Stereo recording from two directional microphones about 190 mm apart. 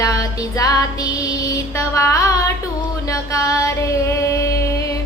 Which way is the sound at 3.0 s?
15° left (ahead or behind).